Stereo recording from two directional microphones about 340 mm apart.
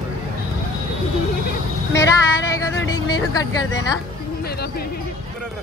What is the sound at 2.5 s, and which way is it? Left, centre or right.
Speech, centre.